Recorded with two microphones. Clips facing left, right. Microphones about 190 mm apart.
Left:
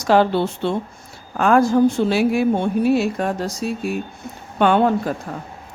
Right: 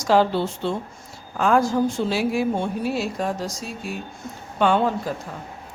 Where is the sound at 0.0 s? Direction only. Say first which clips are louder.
Left 3 dB; 60° left (ahead or behind).